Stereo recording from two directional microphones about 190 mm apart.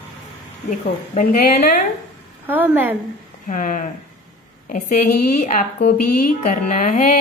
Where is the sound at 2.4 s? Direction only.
10° right (ahead or behind).